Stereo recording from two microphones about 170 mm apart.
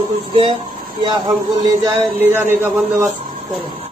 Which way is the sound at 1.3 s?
20° right (ahead or behind).